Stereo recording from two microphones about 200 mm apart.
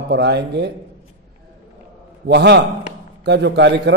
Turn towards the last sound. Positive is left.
turn(degrees=-60)  # may be behind; listen again after turning